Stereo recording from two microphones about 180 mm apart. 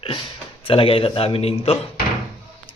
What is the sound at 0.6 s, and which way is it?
Speech, 30° left (ahead or behind).